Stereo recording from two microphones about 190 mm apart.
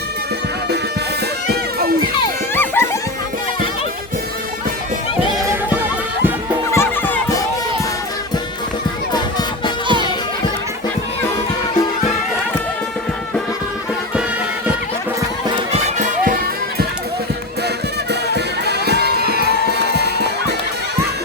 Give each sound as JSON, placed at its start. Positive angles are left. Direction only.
{"t": 2.6, "sound": "music", "side_deg": 10}
{"t": 6.7, "sound": "music", "side_deg": 10}
{"t": 9.1, "sound": "music", "side_deg": 20}
{"t": 9.8, "sound": "music", "side_deg": -25}
{"t": 15.7, "sound": "music", "side_deg": -40}
{"t": 18.1, "sound": "music", "side_deg": -60}